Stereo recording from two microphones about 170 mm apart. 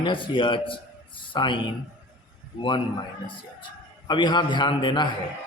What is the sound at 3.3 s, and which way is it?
A man's voice, 30° left (ahead or behind).